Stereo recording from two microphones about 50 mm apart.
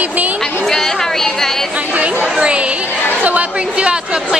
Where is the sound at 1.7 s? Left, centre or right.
Right.